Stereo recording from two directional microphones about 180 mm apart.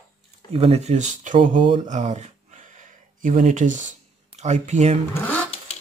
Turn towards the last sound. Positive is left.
turn(degrees=10)  # may be behind; listen again after turning